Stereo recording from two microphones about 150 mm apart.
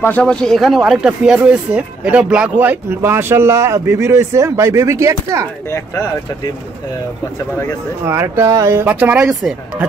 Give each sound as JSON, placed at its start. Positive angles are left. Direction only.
{"t": 0.0, "sound": "speech", "side_deg": 10}
{"t": 8.0, "sound": "speech", "side_deg": -15}